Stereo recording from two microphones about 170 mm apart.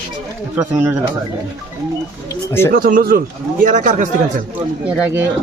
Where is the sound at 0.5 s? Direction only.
15° right (ahead or behind).